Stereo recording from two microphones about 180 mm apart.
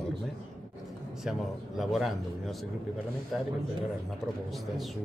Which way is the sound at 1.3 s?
5° right (ahead or behind).